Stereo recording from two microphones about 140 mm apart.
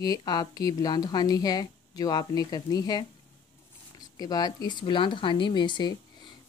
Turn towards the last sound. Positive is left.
turn(degrees=35)  # may be behind; listen again after turning